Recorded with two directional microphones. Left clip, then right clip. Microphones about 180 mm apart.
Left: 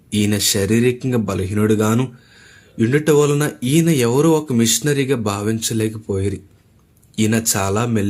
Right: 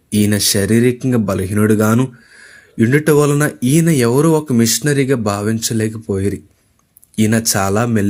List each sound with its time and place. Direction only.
0.1 s speech: 20° right (ahead or behind)